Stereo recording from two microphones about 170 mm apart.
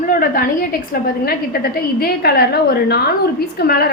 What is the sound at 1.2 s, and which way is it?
A woman's voice, 60° left (ahead or behind).